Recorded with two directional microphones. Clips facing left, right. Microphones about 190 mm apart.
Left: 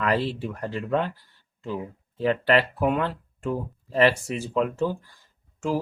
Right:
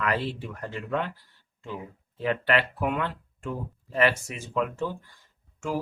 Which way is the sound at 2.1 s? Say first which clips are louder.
Left 4 dB; 35° left (ahead or behind).